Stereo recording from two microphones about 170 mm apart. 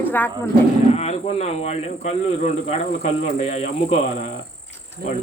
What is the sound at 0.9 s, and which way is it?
A man's voice, 40° left (ahead or behind).